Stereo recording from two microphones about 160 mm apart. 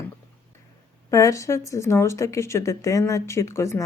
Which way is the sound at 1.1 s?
20° left (ahead or behind).